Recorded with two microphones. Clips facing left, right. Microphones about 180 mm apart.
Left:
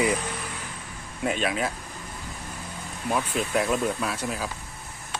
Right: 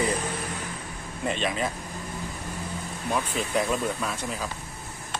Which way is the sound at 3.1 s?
5° left (ahead or behind).